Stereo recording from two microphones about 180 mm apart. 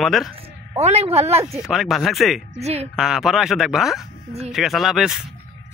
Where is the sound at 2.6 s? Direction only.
35° right (ahead or behind).